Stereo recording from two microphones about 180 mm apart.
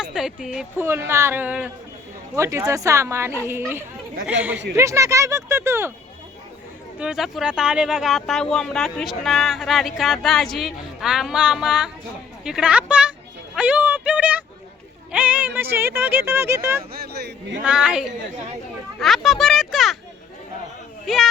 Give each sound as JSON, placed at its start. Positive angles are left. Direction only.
{"t": 0.0, "sound": "speech", "side_deg": -5}
{"t": 7.0, "sound": "speech", "side_deg": -5}
{"t": 13.6, "sound": "a sound", "side_deg": -10}
{"t": 15.1, "sound": "speech", "side_deg": -10}
{"t": 16.9, "sound": "speech", "side_deg": -60}
{"t": 17.6, "sound": "a child's voice", "side_deg": -5}
{"t": 21.1, "sound": "speech", "side_deg": 0}